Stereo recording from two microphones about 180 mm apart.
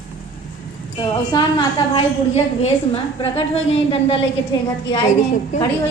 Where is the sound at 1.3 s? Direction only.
25° left (ahead or behind).